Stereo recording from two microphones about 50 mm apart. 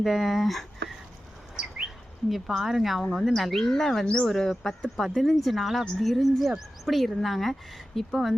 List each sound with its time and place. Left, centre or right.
0.0 s speech: centre
2.3 s speech: centre
3.3 s speech: centre
4.0 s speech: left
4.3 s speech: centre